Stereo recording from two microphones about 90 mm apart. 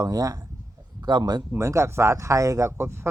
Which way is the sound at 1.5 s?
35° right (ahead or behind).